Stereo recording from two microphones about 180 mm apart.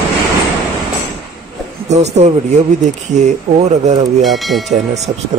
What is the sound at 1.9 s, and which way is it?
Speech, 40° right (ahead or behind).